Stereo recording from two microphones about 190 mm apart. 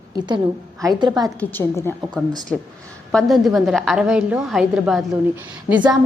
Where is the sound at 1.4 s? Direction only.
10° left (ahead or behind).